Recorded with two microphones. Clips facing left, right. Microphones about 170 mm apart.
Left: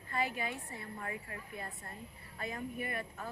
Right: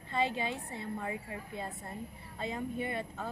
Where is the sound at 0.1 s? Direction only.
25° right (ahead or behind).